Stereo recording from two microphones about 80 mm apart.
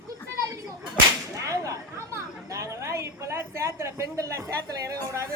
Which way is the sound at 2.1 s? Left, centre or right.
Right.